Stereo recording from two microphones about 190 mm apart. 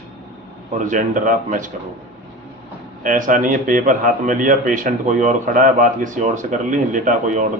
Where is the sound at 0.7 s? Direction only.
40° right (ahead or behind).